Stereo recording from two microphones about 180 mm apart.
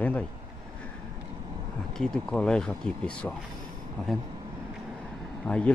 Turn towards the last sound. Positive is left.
turn(degrees=5)  # may be behind; listen again after turning